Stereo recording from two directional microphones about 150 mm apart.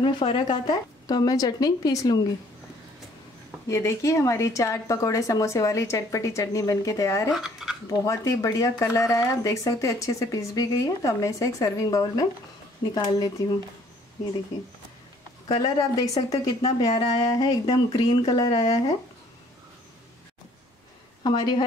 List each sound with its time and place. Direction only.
0.0 s speech: 35° left (ahead or behind)
3.6 s speech: 20° left (ahead or behind)
7.3 s speech: 5° right (ahead or behind)
8.0 s speech: 20° left (ahead or behind)
15.4 s speech: 30° left (ahead or behind)
21.2 s speech: 30° left (ahead or behind)